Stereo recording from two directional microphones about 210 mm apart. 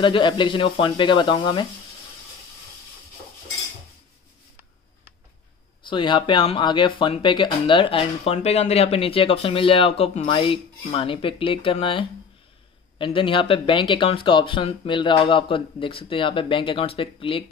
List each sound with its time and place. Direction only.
0.0 s speech: 25° left (ahead or behind)
5.9 s speech: 25° left (ahead or behind)